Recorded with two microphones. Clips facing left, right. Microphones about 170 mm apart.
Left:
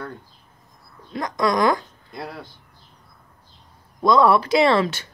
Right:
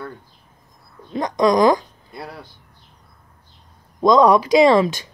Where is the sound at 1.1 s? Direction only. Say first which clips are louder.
Right 5 dB; 20° right (ahead or behind).